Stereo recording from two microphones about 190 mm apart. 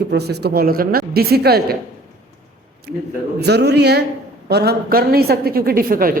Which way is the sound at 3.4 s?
60° right (ahead or behind).